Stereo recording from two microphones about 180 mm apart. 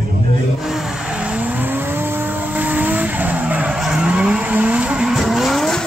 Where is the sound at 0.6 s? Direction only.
Centre (ahead or behind).